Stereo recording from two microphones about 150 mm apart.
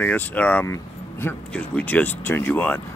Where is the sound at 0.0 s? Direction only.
10° left (ahead or behind).